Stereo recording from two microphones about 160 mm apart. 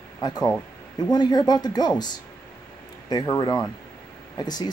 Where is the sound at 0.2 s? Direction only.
25° left (ahead or behind).